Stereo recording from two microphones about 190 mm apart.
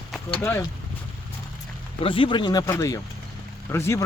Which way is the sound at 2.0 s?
25° left (ahead or behind).